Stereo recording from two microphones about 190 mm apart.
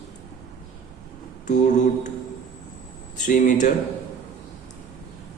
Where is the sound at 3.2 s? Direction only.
40° left (ahead or behind).